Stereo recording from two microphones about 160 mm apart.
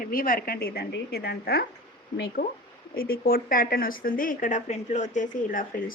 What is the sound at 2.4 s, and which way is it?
Speech, 90° left.